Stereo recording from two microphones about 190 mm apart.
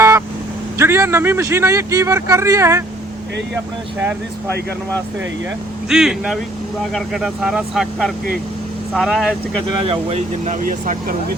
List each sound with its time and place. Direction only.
0.8 s speech: 15° right (ahead or behind)
5.9 s speech: 5° right (ahead or behind)
9.8 s speech: 30° right (ahead or behind)